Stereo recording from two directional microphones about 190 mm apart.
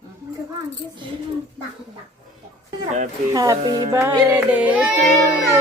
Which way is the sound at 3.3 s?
20° right (ahead or behind).